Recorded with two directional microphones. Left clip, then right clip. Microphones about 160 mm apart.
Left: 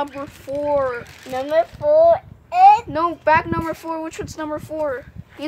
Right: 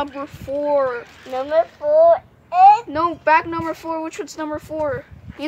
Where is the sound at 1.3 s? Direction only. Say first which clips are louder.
Even; 30° left (ahead or behind).